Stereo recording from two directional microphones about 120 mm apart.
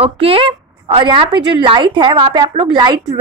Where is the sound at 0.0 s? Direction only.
50° right (ahead or behind).